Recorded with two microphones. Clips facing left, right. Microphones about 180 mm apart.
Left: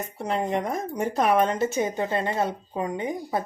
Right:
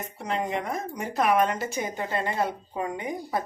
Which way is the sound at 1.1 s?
30° left (ahead or behind).